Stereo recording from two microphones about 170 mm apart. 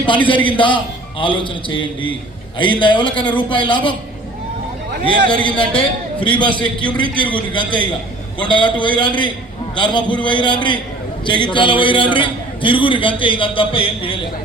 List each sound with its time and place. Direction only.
0.0 s a man's voice: 30° left (ahead or behind)
5.0 s a man's voice: 25° left (ahead or behind)